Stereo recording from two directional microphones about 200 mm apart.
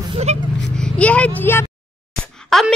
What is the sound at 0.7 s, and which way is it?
A child's voice, 5° left (ahead or behind).